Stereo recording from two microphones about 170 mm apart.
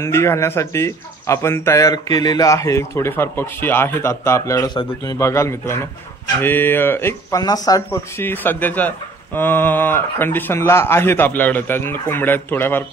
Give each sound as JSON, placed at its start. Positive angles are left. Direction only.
{"t": 0.0, "sound": "speech", "side_deg": 15}